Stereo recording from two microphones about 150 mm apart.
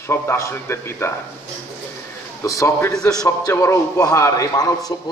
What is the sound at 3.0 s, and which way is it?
Speech, 5° left (ahead or behind).